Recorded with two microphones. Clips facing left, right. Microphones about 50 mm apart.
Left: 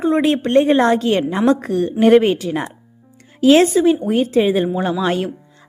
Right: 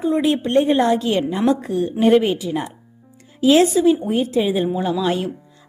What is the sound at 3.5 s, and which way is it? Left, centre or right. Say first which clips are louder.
A woman's voice: left 1 dB; left.